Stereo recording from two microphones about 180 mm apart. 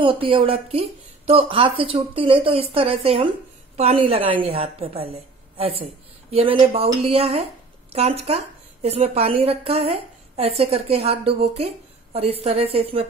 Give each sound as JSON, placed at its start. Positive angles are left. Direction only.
{"t": 0.0, "sound": "a woman's voice", "side_deg": -30}